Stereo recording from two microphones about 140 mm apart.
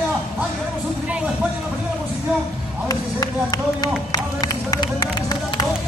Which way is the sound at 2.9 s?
25° left (ahead or behind).